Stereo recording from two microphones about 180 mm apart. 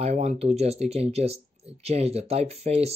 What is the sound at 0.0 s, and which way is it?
Speech, 35° right (ahead or behind).